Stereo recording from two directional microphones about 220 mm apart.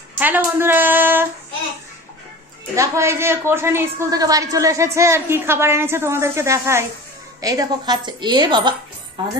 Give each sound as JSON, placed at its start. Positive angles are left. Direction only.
{"t": 0.2, "sound": "a woman's voice", "side_deg": -10}
{"t": 2.7, "sound": "a woman's voice", "side_deg": -15}